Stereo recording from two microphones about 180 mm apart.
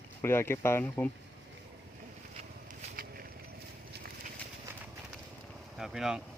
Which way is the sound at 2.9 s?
55° right (ahead or behind).